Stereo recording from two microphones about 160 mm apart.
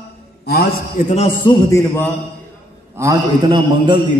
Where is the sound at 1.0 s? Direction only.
55° left (ahead or behind).